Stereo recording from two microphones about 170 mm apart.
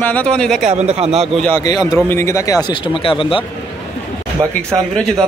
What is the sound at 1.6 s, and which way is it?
Speech, 20° left (ahead or behind).